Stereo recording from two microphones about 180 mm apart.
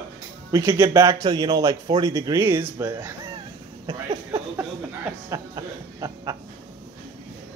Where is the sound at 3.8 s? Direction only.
25° right (ahead or behind).